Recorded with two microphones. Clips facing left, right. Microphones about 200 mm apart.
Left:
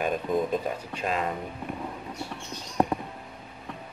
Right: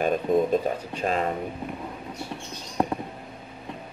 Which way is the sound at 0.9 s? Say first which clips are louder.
Right 3 dB; 40° right (ahead or behind).